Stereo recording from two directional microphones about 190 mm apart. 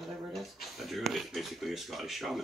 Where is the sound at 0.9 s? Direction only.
Centre (ahead or behind).